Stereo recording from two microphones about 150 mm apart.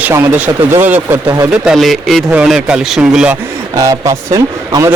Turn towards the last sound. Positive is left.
turn(degrees=-20)  # may be behind; listen again after turning